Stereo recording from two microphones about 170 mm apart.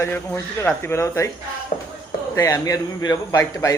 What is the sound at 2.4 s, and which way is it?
A man's voice, 20° left (ahead or behind).